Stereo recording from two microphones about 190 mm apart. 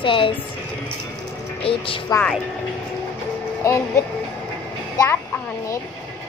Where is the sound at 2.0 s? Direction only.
10° left (ahead or behind).